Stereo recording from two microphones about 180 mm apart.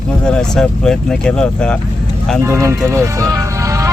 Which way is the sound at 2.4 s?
15° right (ahead or behind).